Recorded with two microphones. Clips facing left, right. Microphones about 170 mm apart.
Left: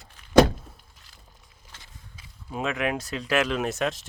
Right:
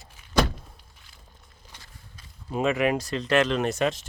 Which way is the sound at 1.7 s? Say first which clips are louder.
Even; 15° right (ahead or behind).